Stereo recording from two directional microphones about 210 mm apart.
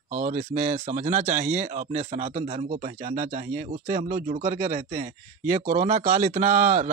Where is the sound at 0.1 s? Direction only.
35° right (ahead or behind).